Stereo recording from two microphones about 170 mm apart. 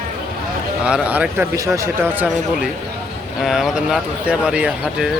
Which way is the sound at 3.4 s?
Centre (ahead or behind).